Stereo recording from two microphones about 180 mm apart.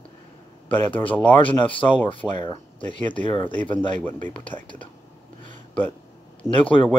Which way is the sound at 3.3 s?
25° left (ahead or behind).